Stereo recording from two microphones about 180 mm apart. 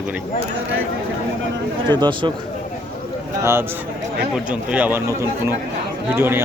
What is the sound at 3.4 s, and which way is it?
A man's voice, 15° right (ahead or behind).